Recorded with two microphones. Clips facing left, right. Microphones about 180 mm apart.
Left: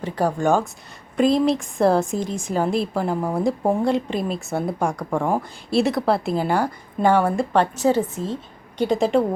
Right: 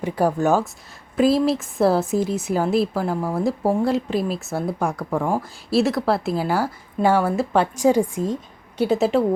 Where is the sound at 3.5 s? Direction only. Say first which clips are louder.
Even; centre (ahead or behind).